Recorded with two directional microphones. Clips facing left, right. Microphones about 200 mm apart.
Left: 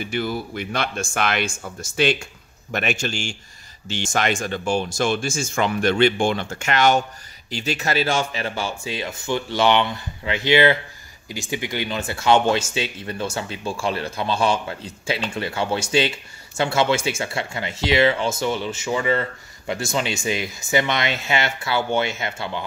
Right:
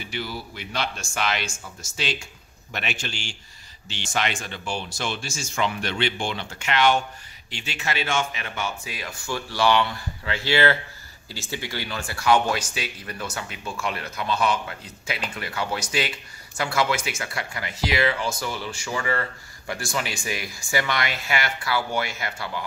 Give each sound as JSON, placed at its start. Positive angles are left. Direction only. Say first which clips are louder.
{"t": 0.0, "sound": "speech", "louder": "left 7 dB", "side_deg": 50}